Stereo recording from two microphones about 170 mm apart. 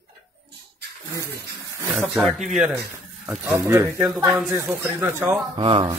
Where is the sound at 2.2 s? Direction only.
Centre (ahead or behind).